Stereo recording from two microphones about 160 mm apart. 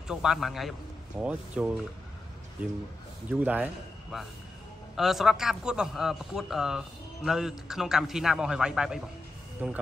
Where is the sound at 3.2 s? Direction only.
10° right (ahead or behind).